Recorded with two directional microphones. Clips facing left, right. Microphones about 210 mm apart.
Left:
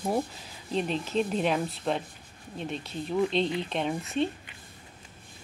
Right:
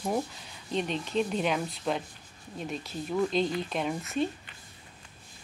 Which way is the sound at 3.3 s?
30° left (ahead or behind).